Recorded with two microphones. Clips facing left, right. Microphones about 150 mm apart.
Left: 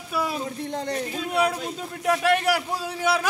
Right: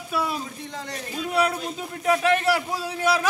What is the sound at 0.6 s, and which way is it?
Speech, 55° left (ahead or behind).